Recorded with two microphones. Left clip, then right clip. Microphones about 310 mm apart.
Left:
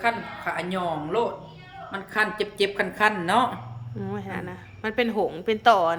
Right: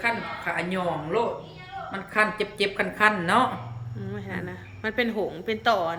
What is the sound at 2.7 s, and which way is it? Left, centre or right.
A woman's voice, centre.